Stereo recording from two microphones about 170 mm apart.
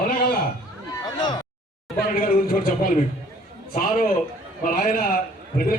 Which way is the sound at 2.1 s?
55° left (ahead or behind).